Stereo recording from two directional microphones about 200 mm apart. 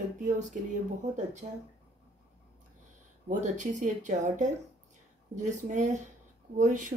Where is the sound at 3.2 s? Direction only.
40° right (ahead or behind).